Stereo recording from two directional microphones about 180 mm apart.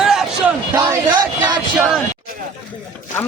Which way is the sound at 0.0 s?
Centre (ahead or behind).